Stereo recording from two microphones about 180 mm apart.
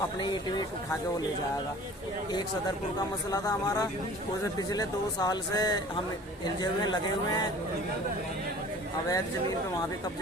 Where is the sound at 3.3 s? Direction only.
20° left (ahead or behind).